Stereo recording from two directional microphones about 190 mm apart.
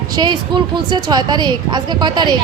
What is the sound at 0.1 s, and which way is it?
A woman's voice, 25° right (ahead or behind).